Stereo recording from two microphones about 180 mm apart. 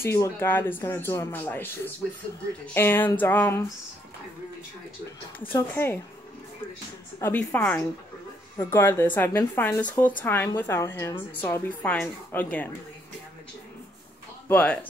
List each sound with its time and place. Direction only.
0.0 s a woman's voice: 15° left (ahead or behind)
5.5 s a woman's voice: 15° left (ahead or behind)
7.2 s a woman's voice: 10° left (ahead or behind)
14.5 s a woman's voice: 10° left (ahead or behind)